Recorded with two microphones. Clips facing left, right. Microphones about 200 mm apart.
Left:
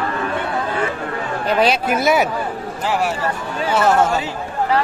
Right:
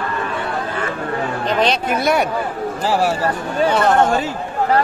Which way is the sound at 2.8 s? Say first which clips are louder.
Right 2 dB; 35° right (ahead or behind).